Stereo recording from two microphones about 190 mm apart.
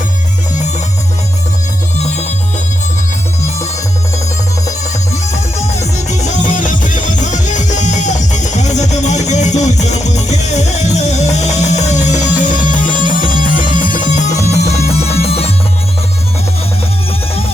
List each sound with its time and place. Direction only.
2.0 s music: 35° left (ahead or behind)
5.1 s music: 35° left (ahead or behind)